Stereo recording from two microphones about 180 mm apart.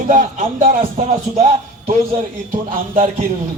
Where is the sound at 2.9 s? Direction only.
45° right (ahead or behind).